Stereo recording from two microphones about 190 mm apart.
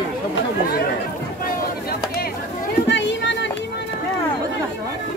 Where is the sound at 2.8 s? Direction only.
65° left (ahead or behind).